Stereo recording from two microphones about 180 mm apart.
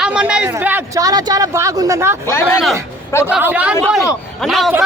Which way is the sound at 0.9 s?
20° right (ahead or behind).